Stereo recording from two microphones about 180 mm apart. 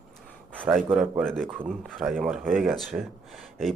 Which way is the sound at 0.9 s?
5° right (ahead or behind).